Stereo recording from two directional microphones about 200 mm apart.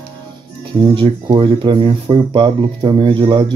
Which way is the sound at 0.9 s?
25° right (ahead or behind).